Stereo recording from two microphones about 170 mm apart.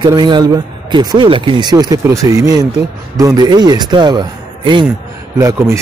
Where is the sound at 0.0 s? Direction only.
25° right (ahead or behind).